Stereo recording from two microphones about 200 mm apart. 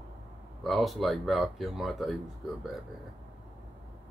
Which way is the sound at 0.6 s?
Centre (ahead or behind).